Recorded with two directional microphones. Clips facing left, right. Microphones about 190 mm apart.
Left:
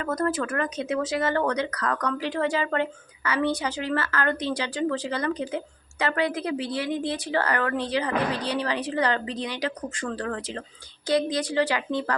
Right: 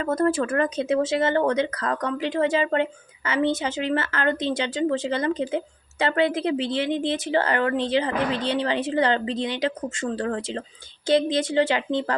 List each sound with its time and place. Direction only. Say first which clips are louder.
0.0 s speech: right 4 dB; 25° right (ahead or behind)